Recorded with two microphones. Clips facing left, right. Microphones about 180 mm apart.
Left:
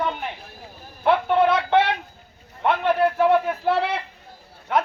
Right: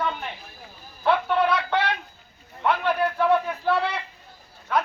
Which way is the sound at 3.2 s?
25° left (ahead or behind).